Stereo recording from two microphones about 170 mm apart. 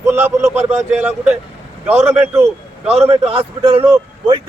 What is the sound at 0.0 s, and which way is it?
Speech, 10° right (ahead or behind).